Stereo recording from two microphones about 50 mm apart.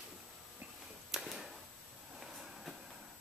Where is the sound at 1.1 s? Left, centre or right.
Centre.